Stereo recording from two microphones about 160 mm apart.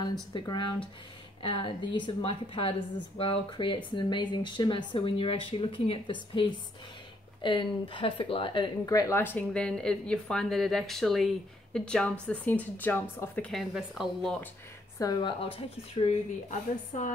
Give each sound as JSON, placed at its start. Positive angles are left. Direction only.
{"t": 0.3, "sound": "speech", "side_deg": 30}
{"t": 7.4, "sound": "a woman's voice", "side_deg": 30}
{"t": 13.5, "sound": "speech", "side_deg": 0}
{"t": 15.0, "sound": "speech", "side_deg": 25}